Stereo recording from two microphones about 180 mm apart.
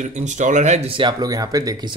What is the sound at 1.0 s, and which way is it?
Speech, 25° right (ahead or behind).